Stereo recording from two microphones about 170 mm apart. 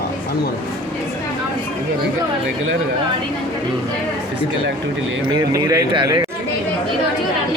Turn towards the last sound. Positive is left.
turn(degrees=-25)  # may be behind; listen again after turning